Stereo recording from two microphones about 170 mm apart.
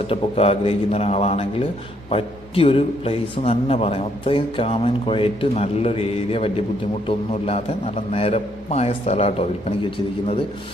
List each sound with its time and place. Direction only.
0.1 s a man's voice: 35° left (ahead or behind)